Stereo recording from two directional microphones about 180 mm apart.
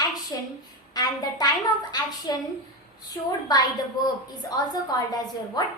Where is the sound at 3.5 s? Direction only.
20° left (ahead or behind).